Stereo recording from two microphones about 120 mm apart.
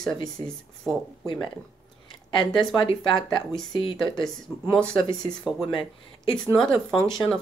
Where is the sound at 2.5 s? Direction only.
Centre (ahead or behind).